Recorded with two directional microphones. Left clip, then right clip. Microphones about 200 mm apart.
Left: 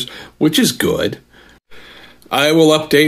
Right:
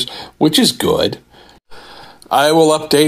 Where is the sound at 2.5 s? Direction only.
5° left (ahead or behind).